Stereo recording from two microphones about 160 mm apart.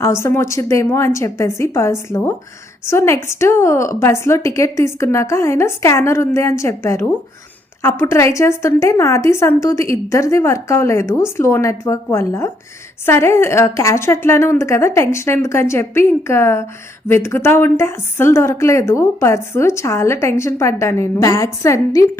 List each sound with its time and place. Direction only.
0.0 s a woman's voice: 15° left (ahead or behind)